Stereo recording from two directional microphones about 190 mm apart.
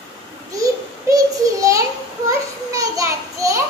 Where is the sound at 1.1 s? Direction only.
15° right (ahead or behind).